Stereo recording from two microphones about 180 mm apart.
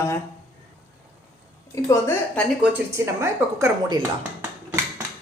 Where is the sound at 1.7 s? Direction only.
15° left (ahead or behind).